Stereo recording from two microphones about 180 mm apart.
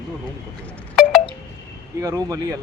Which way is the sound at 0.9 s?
Centre (ahead or behind).